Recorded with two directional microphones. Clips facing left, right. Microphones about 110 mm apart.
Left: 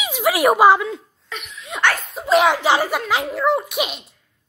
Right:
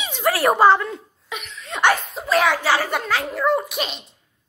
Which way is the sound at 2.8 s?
5° left (ahead or behind).